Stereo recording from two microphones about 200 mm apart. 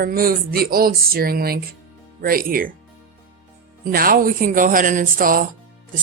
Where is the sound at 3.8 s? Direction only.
45° right (ahead or behind).